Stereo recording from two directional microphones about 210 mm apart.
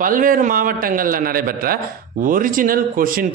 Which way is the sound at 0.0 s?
40° right (ahead or behind).